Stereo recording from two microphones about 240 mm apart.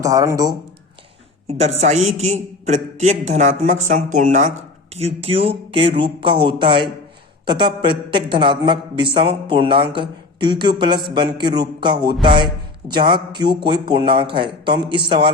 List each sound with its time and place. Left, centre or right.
0.0 s speech: centre
1.5 s a man's voice: right